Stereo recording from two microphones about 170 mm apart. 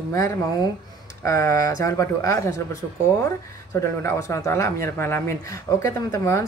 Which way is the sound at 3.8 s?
15° left (ahead or behind).